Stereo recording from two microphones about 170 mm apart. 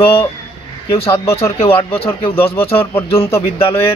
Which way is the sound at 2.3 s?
15° left (ahead or behind).